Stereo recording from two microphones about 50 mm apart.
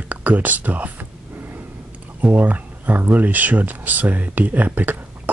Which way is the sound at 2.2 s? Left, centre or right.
Right.